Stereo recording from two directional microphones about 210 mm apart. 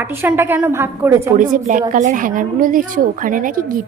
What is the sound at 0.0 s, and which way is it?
A woman's voice, 10° right (ahead or behind).